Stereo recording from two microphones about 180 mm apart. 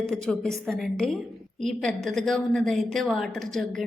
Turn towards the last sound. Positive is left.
turn(degrees=0)  # may be behind; listen again after turning